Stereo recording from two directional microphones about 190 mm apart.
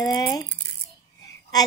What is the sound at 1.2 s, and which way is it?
Child singing, 20° left (ahead or behind).